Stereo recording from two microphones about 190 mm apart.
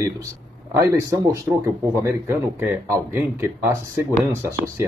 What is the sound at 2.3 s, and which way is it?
Speech, 15° right (ahead or behind).